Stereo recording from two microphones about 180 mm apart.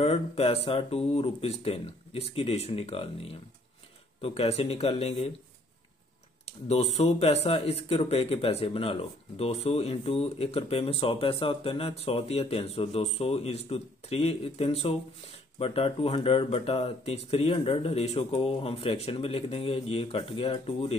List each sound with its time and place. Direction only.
0.0 s speech: 35° left (ahead or behind)
6.4 s speech: 35° left (ahead or behind)